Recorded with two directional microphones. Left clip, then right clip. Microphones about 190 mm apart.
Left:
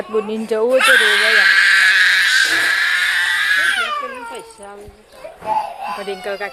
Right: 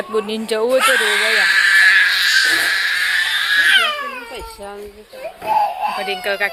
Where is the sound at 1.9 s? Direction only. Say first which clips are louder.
Even; 45° left (ahead or behind).